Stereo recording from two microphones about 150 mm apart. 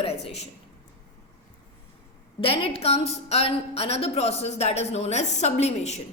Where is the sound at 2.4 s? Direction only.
40° left (ahead or behind).